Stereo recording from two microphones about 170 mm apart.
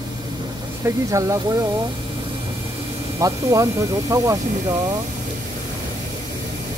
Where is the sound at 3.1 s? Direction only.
20° right (ahead or behind).